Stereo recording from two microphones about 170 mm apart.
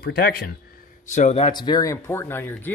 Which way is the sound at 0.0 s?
65° left (ahead or behind).